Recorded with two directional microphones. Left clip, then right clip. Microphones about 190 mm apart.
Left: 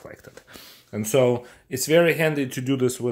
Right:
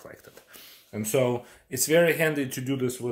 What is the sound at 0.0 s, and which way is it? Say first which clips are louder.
Speech: left 4 dB; 25° left (ahead or behind).